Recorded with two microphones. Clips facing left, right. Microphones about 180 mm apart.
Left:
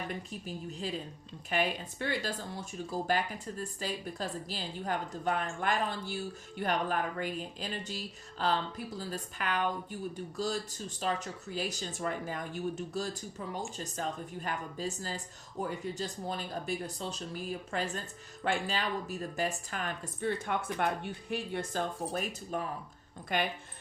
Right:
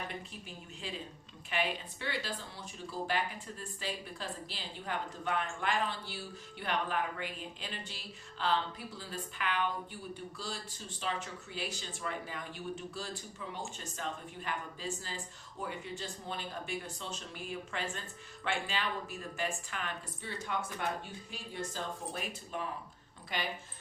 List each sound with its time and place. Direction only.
0.1 s speech: 40° left (ahead or behind)